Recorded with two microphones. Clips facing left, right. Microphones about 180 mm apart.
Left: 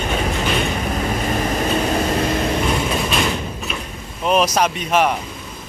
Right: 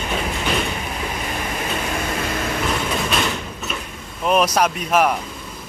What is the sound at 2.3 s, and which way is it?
Vehicle, 25° left (ahead or behind).